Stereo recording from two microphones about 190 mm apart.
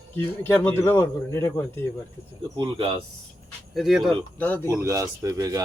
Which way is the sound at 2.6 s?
25° right (ahead or behind).